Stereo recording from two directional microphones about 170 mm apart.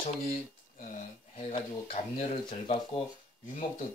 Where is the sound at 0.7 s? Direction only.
45° left (ahead or behind).